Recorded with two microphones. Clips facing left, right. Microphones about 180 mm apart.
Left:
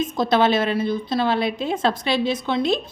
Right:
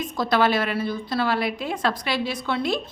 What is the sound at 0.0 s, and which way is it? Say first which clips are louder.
A woman's voice: left 3 dB; 20° left (ahead or behind).